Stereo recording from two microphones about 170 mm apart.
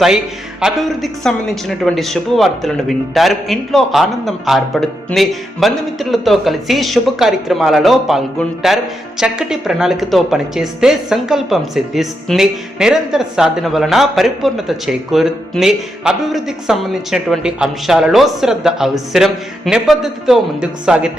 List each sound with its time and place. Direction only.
0.6 s a man's voice: centre (ahead or behind)